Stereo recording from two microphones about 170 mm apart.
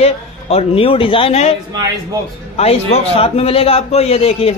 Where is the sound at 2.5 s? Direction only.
35° left (ahead or behind).